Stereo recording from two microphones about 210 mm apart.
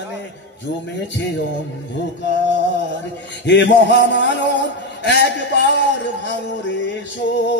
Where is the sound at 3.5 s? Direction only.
55° left (ahead or behind).